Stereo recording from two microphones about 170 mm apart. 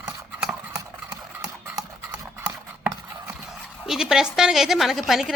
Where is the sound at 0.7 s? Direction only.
15° right (ahead or behind).